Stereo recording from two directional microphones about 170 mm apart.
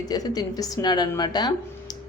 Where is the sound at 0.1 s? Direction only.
20° left (ahead or behind).